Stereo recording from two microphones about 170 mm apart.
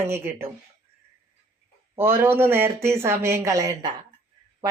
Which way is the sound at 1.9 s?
15° right (ahead or behind).